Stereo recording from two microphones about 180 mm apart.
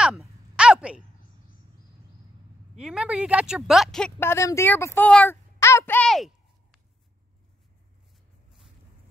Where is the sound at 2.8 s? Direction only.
5° right (ahead or behind).